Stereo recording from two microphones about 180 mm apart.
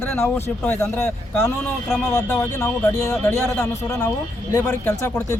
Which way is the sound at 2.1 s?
15° left (ahead or behind).